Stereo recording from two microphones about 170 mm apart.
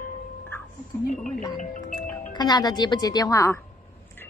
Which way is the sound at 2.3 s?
25° left (ahead or behind).